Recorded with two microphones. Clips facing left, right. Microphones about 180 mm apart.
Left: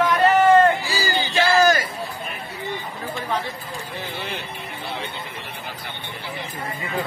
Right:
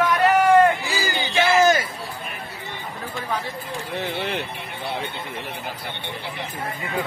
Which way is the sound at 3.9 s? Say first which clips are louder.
Right 6 dB; 70° right (ahead or behind).